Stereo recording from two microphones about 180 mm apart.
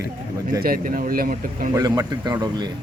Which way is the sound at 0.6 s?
50° right (ahead or behind).